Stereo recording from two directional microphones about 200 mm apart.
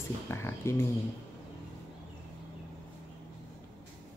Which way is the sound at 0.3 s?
10° left (ahead or behind).